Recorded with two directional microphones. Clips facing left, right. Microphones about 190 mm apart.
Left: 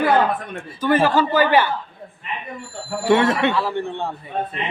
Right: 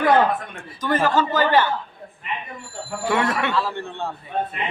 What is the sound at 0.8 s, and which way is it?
Speech, 10° left (ahead or behind).